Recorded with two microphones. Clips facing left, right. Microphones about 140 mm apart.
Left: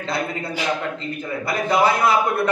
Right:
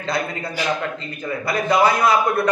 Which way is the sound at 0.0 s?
25° left (ahead or behind).